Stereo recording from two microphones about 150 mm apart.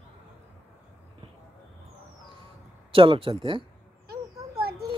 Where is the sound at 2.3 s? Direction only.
35° right (ahead or behind).